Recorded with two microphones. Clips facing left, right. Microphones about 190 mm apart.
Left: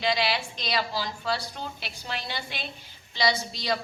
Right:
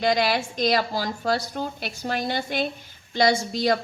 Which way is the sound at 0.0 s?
50° right (ahead or behind).